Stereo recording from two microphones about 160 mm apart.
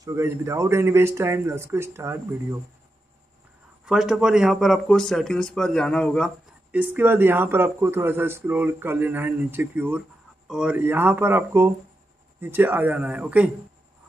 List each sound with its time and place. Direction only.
0.0 s speech: 20° right (ahead or behind)
3.8 s speech: 5° right (ahead or behind)
6.7 s speech: 10° right (ahead or behind)